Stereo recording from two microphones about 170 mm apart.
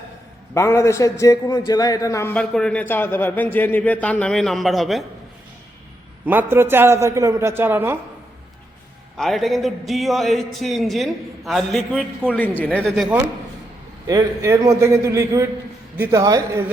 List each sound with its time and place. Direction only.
0.5 s a man's voice: 15° left (ahead or behind)
2.3 s a man's voice: 5° left (ahead or behind)
6.2 s a man's voice: 10° right (ahead or behind)
9.1 s a man's voice: centre (ahead or behind)
14.1 s a man's voice: 20° right (ahead or behind)